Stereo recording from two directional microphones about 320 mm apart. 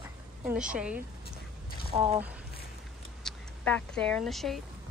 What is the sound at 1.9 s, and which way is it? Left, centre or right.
Speech, centre.